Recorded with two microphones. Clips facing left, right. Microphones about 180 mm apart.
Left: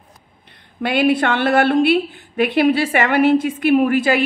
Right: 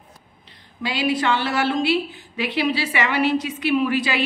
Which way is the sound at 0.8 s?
60° left (ahead or behind).